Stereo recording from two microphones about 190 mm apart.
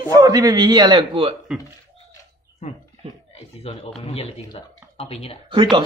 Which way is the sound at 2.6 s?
35° left (ahead or behind).